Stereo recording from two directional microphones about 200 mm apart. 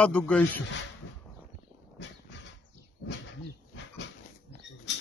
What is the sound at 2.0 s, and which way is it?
Dog, 65° left (ahead or behind).